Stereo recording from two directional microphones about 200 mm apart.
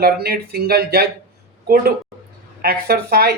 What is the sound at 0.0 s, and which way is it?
Speech, 50° right (ahead or behind).